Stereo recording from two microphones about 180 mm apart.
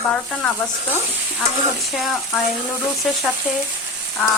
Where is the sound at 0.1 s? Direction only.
5° left (ahead or behind).